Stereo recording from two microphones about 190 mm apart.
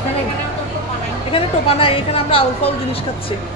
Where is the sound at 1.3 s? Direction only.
30° left (ahead or behind).